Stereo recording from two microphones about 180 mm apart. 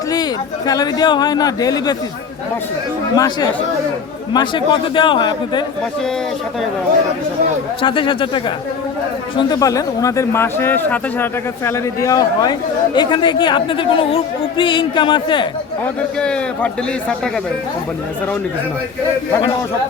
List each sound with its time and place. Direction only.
0.1 s speech: 20° left (ahead or behind)
3.2 s speech: 20° left (ahead or behind)
7.8 s speech: 25° left (ahead or behind)
16.1 s a man's voice: 5° left (ahead or behind)